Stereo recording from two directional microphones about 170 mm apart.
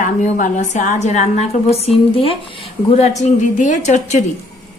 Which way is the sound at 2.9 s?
40° left (ahead or behind).